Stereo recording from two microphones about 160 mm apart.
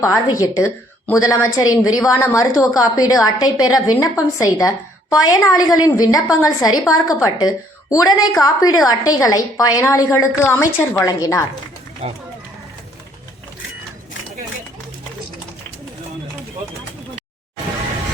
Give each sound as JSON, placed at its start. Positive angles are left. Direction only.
{"t": 0.0, "sound": "a woman's voice", "side_deg": 20}